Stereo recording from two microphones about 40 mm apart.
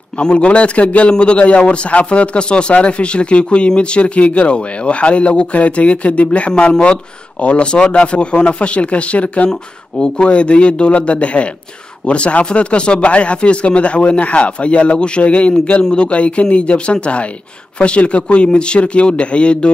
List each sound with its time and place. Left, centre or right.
0.2 s speech: left
9.5 s speech: left
15.8 s speech: centre
16.1 s speech: left